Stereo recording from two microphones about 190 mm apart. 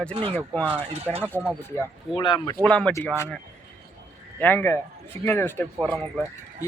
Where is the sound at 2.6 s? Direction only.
5° left (ahead or behind).